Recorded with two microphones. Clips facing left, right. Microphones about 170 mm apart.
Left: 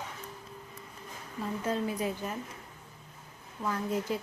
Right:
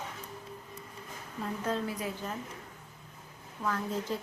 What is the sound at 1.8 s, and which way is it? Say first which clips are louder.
Speech: left 3 dB; 15° left (ahead or behind).